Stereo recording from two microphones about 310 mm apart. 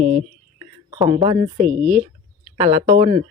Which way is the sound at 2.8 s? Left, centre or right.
Centre.